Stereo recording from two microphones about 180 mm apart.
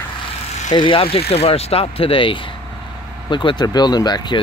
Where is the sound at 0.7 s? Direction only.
30° left (ahead or behind).